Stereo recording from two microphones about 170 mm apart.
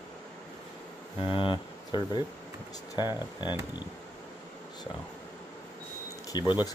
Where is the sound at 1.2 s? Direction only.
30° left (ahead or behind).